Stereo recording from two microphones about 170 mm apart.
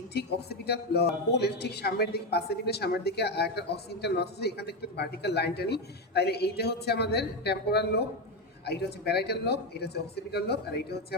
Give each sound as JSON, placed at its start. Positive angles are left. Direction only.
{"t": 0.1, "sound": "speech", "side_deg": 75}